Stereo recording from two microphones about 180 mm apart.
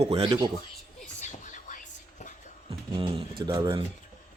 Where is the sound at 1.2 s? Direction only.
45° left (ahead or behind).